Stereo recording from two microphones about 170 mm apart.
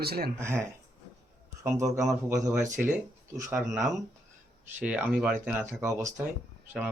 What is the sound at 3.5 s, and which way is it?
Speech, centre (ahead or behind).